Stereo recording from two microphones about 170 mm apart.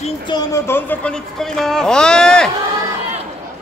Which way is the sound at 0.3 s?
20° left (ahead or behind).